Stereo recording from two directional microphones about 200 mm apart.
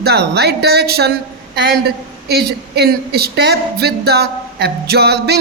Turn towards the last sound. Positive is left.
turn(degrees=-55)  # may be behind; listen again after turning